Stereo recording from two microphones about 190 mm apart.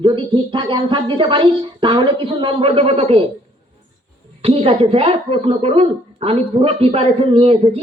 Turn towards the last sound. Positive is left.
turn(degrees=-30)  # may be behind; listen again after turning